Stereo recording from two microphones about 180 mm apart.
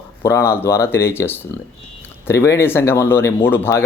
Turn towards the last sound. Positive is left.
turn(degrees=10)  # may be behind; listen again after turning